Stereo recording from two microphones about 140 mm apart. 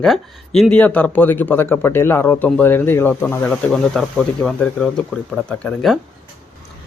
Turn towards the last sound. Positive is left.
turn(degrees=5)  # may be behind; listen again after turning